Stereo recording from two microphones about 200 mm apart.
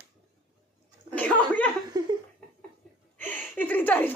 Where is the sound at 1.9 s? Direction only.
20° right (ahead or behind).